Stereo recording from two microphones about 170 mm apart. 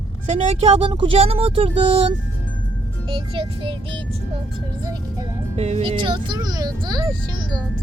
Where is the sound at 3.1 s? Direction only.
30° right (ahead or behind).